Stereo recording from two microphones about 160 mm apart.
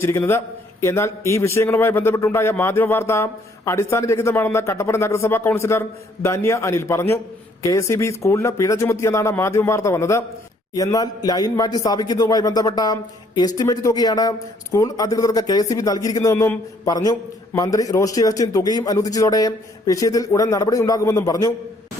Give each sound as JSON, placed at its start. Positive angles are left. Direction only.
{"t": 0.0, "sound": "a man's voice", "side_deg": 15}